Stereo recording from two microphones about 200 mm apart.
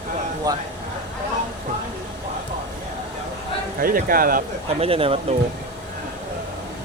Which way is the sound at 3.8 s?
45° right (ahead or behind).